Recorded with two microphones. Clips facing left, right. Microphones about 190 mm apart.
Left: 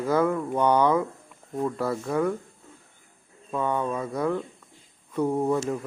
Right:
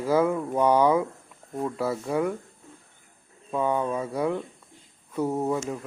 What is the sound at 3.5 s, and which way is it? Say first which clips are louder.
Speech: right 1 dB; 10° right (ahead or behind).